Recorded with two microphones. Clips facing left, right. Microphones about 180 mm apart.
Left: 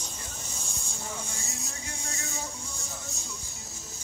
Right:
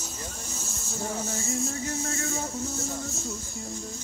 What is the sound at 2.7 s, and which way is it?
Speech, centre (ahead or behind).